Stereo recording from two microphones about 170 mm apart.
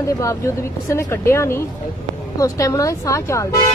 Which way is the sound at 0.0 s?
20° left (ahead or behind).